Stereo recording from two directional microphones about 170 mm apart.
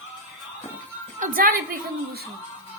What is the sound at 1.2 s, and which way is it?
A woman's voice, 55° right (ahead or behind).